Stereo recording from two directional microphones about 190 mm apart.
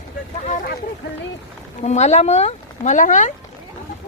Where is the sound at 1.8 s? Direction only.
35° left (ahead or behind).